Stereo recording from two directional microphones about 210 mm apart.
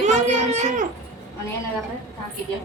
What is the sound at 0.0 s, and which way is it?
Baby cry, 35° right (ahead or behind).